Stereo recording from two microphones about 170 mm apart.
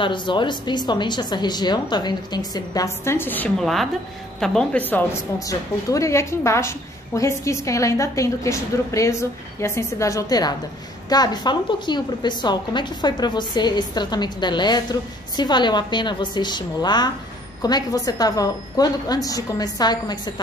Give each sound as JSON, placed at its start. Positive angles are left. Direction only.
{"t": 0.0, "sound": "a woman's voice", "side_deg": 30}
{"t": 3.5, "sound": "a woman's voice", "side_deg": 0}